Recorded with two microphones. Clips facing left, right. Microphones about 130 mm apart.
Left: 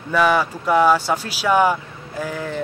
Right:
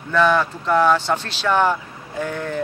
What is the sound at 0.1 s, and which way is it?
Speech, 10° left (ahead or behind).